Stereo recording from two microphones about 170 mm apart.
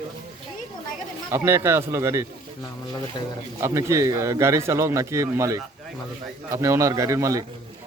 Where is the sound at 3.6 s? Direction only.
15° right (ahead or behind).